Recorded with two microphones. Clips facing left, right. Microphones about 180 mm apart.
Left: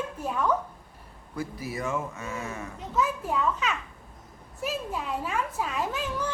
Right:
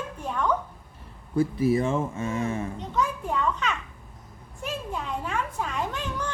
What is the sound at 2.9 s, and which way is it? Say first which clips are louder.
A child's voice: left 1 dB; 5° left (ahead or behind).